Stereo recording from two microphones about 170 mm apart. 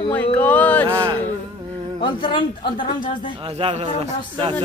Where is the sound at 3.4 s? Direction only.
35° right (ahead or behind).